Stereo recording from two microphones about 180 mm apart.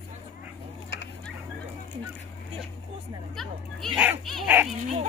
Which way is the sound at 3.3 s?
Centre (ahead or behind).